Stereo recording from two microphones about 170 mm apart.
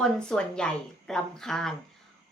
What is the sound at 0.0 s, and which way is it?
A woman's voice, 5° left (ahead or behind).